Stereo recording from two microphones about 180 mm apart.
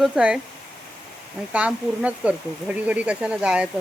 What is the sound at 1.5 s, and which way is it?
Speech, 5° right (ahead or behind).